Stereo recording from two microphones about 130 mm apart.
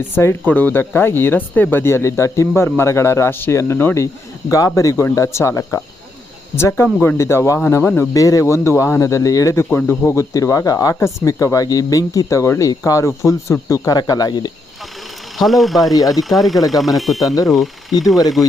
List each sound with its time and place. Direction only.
0.2 s speech: 15° left (ahead or behind); by 14.5 s 35° left (ahead or behind)
15.4 s speech: centre (ahead or behind)
17.2 s speech: 30° left (ahead or behind)
17.5 s speech: centre (ahead or behind)